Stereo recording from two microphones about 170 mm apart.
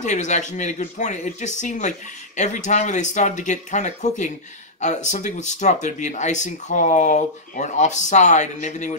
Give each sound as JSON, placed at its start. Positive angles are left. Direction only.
{"t": 0.0, "sound": "speech", "side_deg": 45}